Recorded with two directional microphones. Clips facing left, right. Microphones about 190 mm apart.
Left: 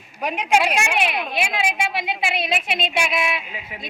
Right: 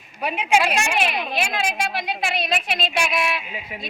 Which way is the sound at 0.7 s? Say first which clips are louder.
Even; 5° left (ahead or behind).